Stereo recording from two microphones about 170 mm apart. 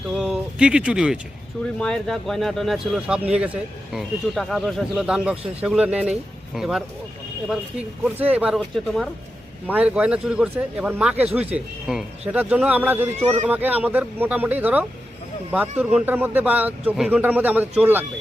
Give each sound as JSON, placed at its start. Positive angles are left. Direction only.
{"t": 0.1, "sound": "speech", "side_deg": 0}
{"t": 13.1, "sound": "speech", "side_deg": -40}
{"t": 13.5, "sound": "speech", "side_deg": -10}